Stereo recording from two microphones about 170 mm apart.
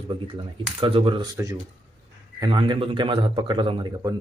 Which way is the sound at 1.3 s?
15° right (ahead or behind).